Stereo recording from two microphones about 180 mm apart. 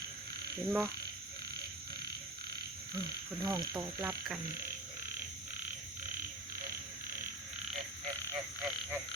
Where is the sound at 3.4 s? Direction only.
20° right (ahead or behind).